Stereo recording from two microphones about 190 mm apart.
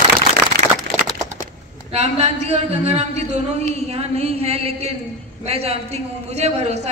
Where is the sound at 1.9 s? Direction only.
35° right (ahead or behind).